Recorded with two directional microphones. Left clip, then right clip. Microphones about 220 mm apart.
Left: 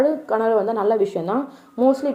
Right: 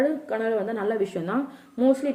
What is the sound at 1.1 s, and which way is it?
Speech, 30° right (ahead or behind).